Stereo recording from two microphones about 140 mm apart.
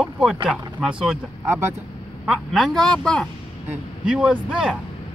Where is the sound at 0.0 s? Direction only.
5° right (ahead or behind).